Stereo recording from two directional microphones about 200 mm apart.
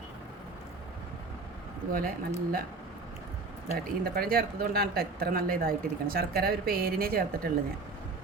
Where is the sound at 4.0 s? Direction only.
50° right (ahead or behind).